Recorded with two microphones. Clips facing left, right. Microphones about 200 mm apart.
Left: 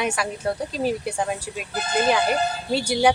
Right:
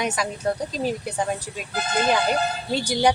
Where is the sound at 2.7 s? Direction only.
5° left (ahead or behind).